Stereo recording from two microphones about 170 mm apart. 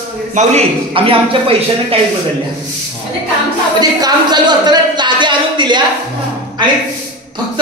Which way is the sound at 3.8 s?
25° right (ahead or behind).